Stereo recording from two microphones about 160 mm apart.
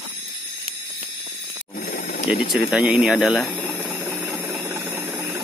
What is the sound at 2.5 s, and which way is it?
Speech, centre (ahead or behind).